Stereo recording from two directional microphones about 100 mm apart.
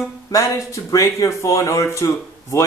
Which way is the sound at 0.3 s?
30° left (ahead or behind).